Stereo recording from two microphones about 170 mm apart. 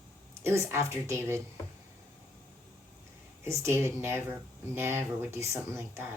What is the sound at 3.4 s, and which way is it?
Speech, 15° right (ahead or behind).